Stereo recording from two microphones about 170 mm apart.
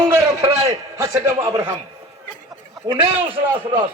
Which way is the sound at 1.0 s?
20° right (ahead or behind).